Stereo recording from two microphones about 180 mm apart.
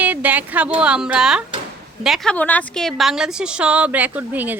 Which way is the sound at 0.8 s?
5° right (ahead or behind).